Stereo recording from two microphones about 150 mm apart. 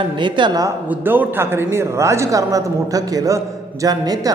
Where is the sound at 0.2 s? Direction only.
30° right (ahead or behind).